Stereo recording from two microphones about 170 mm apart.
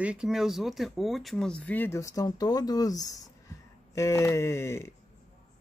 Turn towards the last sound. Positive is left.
turn(degrees=15)  # may be behind; listen again after turning